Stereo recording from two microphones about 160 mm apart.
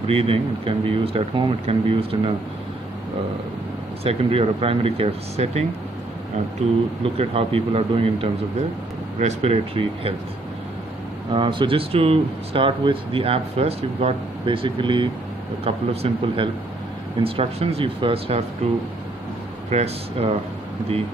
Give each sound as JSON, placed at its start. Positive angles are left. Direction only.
{"t": 0.0, "sound": "speech", "side_deg": -35}
{"t": 4.0, "sound": "speech", "side_deg": -40}
{"t": 7.0, "sound": "speech", "side_deg": -35}
{"t": 11.3, "sound": "speech", "side_deg": -30}
{"t": 19.7, "sound": "speech", "side_deg": -40}